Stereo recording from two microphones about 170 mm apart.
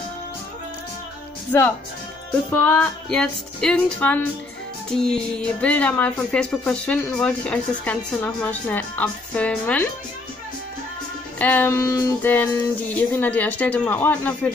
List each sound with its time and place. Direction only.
1.5 s speech: 10° left (ahead or behind)
11.3 s speech: 10° left (ahead or behind)